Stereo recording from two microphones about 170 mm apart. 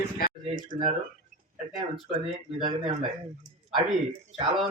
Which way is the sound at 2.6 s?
35° right (ahead or behind).